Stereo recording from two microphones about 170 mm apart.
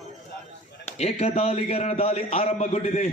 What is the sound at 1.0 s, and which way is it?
A man's voice, 35° left (ahead or behind).